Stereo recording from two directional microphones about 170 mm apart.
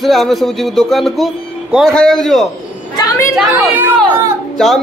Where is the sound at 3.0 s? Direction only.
20° left (ahead or behind).